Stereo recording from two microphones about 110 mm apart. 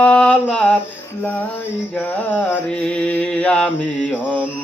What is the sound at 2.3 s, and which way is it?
Mantra, 10° left (ahead or behind).